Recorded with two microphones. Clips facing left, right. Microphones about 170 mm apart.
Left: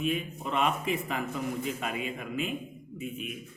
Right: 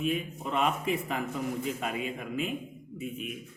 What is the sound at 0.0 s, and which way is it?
A man's voice, 40° right (ahead or behind).